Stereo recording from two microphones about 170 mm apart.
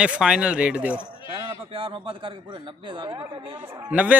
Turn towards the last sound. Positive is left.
turn(degrees=-10)  # may be behind; listen again after turning